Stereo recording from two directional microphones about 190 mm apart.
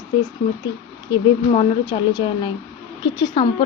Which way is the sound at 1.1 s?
25° left (ahead or behind).